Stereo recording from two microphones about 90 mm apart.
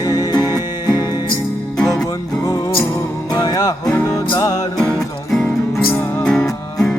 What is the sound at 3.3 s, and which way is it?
Music, 45° left (ahead or behind).